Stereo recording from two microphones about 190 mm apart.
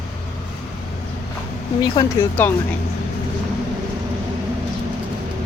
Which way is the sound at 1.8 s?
15° left (ahead or behind).